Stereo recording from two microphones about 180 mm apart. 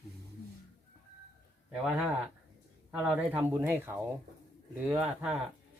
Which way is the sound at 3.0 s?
10° right (ahead or behind).